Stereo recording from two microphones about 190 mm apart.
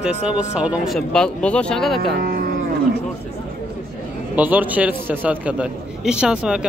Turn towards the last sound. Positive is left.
turn(degrees=-5)  # may be behind; listen again after turning